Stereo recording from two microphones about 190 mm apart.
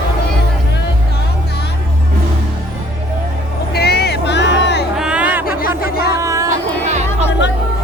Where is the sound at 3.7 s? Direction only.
55° left (ahead or behind).